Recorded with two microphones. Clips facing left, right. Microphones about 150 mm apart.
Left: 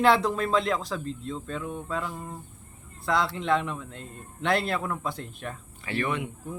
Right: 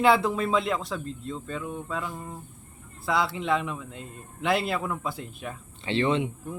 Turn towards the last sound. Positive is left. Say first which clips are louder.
# right 5 dB
turn(degrees=-25)  # may be behind; listen again after turning